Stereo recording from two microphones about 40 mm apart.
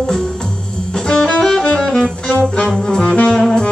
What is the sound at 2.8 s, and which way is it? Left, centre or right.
Saxophone, centre.